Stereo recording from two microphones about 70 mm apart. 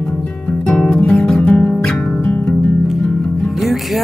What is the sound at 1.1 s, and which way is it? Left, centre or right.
Guitar, centre.